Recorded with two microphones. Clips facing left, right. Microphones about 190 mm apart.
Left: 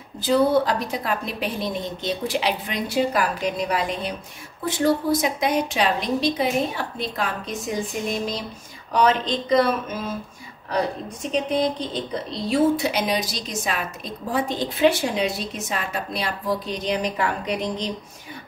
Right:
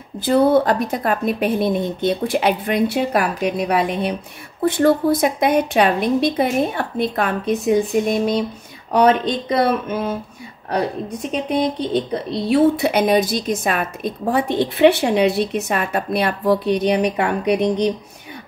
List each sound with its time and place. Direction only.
0.2 s a woman's voice: 55° right (ahead or behind)
11.5 s a woman's voice: 60° right (ahead or behind)